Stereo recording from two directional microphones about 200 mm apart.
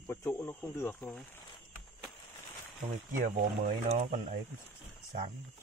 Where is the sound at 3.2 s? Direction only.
40° right (ahead or behind).